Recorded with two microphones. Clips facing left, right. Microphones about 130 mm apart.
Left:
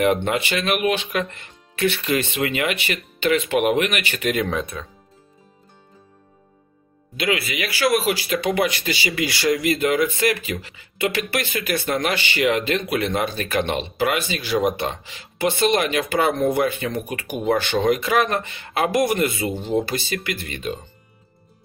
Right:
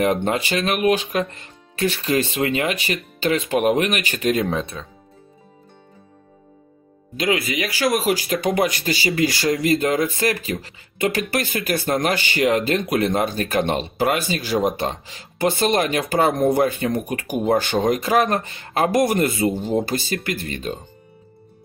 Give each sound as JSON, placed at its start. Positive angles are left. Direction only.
{"t": 0.0, "sound": "speech", "side_deg": -35}
{"t": 7.2, "sound": "speech", "side_deg": -40}